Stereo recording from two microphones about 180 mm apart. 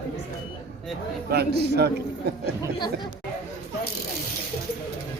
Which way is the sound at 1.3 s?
65° right (ahead or behind).